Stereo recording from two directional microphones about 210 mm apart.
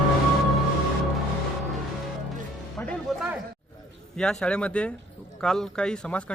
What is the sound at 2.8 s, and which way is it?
Music, 5° left (ahead or behind).